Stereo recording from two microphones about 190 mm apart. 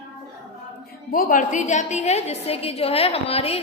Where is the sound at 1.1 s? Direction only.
45° left (ahead or behind).